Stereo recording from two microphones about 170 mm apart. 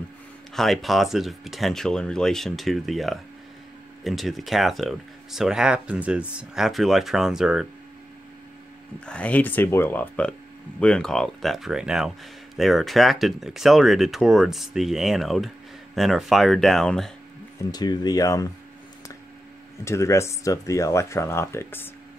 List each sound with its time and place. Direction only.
0.6 s speech: centre (ahead or behind)
9.0 s speech: 5° left (ahead or behind)
17.6 s speech: 25° left (ahead or behind)
19.8 s speech: 15° left (ahead or behind)